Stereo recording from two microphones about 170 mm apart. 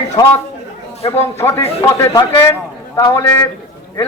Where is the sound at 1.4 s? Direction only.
15° left (ahead or behind).